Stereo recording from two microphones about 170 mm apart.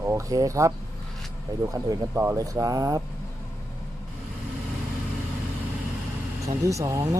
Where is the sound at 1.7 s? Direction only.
15° right (ahead or behind).